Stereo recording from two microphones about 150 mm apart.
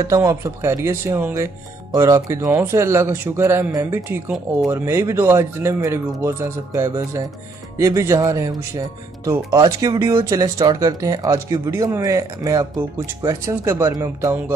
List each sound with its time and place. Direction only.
0.0 s speech: 20° right (ahead or behind)